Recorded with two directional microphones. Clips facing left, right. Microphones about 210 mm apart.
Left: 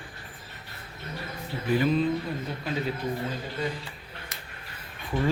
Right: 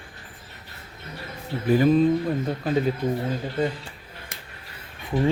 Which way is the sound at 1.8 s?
45° right (ahead or behind).